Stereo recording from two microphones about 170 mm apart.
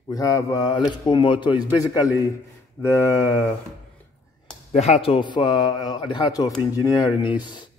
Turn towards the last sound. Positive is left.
turn(degrees=25)  # may be behind; listen again after turning